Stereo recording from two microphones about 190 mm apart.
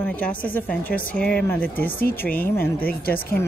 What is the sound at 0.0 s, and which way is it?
Speech, 10° left (ahead or behind).